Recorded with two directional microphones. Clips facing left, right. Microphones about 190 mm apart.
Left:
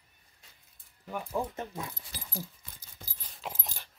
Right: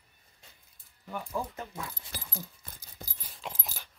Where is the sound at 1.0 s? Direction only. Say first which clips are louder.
Left 2 dB; 10° left (ahead or behind).